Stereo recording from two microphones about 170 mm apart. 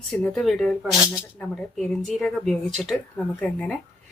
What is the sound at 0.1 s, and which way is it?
Speech, 5° left (ahead or behind).